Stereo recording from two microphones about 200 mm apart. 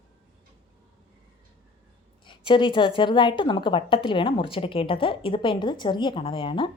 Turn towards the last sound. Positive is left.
turn(degrees=25)  # may be behind; listen again after turning